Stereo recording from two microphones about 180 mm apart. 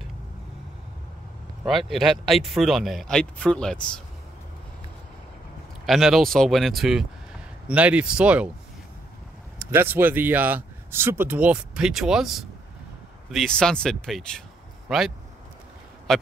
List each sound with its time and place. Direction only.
1.7 s speech: centre (ahead or behind)
5.9 s speech: centre (ahead or behind)
9.6 s speech: 15° right (ahead or behind)